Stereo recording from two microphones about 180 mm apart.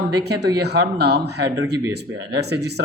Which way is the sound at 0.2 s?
65° right (ahead or behind).